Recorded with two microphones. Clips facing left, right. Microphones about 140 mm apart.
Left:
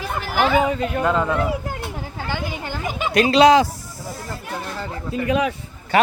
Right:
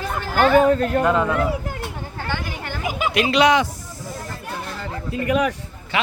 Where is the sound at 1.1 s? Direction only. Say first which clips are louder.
Left 1 dB; 10° right (ahead or behind).